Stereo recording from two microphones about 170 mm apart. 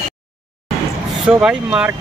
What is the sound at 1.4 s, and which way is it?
Speech, 5° right (ahead or behind).